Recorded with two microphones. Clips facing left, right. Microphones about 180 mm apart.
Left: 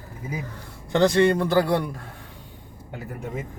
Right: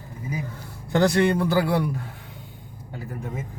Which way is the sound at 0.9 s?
5° right (ahead or behind).